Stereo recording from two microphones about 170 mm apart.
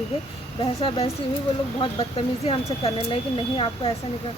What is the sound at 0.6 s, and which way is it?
Speech, 35° left (ahead or behind).